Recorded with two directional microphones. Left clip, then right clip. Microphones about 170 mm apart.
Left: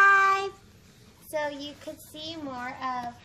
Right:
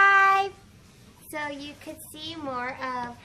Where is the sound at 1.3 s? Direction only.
25° right (ahead or behind).